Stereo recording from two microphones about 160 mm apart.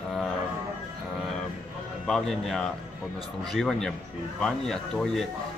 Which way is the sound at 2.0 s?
Centre (ahead or behind).